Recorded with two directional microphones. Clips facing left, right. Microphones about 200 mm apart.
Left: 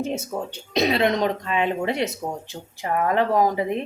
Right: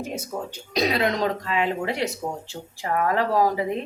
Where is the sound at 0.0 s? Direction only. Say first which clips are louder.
Left 4 dB; 25° left (ahead or behind).